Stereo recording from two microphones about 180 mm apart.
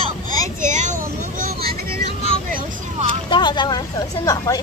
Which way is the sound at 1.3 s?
55° right (ahead or behind).